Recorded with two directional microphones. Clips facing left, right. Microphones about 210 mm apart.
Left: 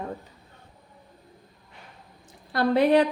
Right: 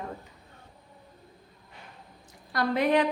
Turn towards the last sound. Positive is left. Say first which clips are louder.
# left 5 dB
turn(degrees=35)  # may be behind; listen again after turning